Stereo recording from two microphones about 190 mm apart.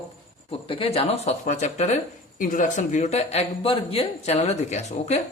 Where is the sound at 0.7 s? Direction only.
30° left (ahead or behind).